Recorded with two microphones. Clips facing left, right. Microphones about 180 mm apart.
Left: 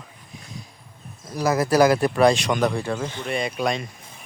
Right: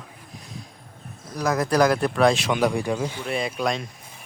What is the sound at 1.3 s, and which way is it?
Speech, 5° left (ahead or behind).